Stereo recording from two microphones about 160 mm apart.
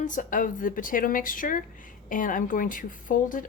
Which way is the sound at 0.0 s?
55° left (ahead or behind).